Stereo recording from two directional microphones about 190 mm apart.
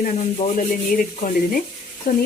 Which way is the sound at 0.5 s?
45° left (ahead or behind).